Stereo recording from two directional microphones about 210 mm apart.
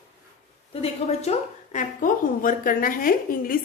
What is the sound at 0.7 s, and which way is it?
A woman's voice, 30° left (ahead or behind).